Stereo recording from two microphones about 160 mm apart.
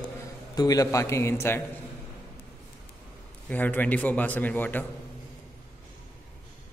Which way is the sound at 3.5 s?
10° left (ahead or behind).